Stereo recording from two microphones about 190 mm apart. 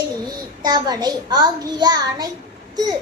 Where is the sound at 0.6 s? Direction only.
20° right (ahead or behind).